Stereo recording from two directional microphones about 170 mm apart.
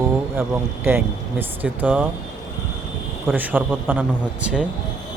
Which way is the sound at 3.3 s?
10° right (ahead or behind).